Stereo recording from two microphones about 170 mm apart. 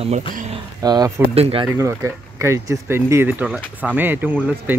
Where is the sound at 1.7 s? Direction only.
15° right (ahead or behind).